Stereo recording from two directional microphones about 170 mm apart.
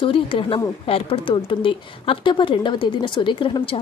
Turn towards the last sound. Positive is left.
turn(degrees=30)  # may be behind; listen again after turning